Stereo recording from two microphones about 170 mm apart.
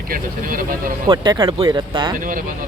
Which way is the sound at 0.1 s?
55° right (ahead or behind).